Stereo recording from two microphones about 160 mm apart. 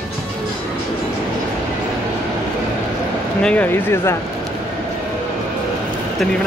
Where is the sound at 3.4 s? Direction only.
10° left (ahead or behind).